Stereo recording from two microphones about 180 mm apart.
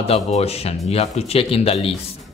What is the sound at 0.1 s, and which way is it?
A man's voice, 35° left (ahead or behind).